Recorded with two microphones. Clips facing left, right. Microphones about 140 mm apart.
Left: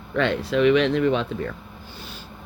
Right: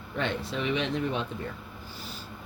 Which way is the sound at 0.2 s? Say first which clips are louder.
Left 10 dB; 80° left.